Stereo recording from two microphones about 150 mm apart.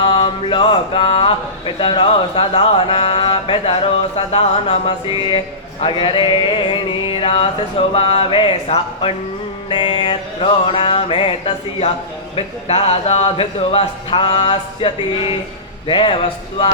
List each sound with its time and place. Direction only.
0.0 s speech: 35° left (ahead or behind)